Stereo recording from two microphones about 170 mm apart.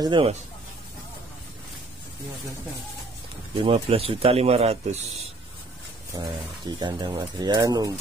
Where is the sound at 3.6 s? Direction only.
35° right (ahead or behind).